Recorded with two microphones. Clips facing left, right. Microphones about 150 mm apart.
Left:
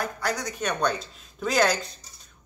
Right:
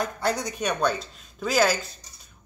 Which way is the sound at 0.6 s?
5° right (ahead or behind).